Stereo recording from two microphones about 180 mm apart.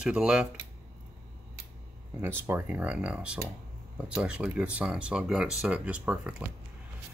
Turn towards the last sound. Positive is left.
turn(degrees=-5)  # may be behind; listen again after turning